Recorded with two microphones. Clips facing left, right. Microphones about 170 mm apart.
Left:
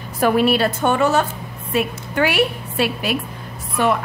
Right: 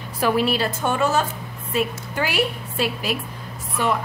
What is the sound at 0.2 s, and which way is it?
A woman's voice, 60° left (ahead or behind).